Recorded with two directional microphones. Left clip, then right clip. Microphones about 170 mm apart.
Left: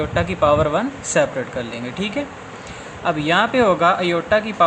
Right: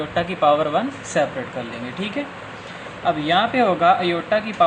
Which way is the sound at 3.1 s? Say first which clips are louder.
Left 1 dB; 30° left (ahead or behind).